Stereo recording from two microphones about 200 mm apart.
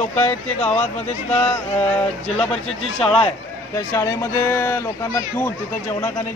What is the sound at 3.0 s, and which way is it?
Speech, 30° left (ahead or behind).